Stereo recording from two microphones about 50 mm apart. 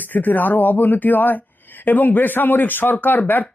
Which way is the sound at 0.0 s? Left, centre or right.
Left.